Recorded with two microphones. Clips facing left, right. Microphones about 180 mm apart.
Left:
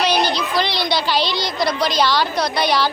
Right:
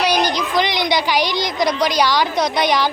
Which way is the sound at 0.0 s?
15° right (ahead or behind).